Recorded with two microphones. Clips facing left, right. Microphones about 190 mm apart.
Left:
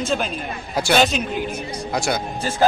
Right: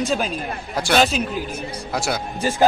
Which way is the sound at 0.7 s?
Centre (ahead or behind).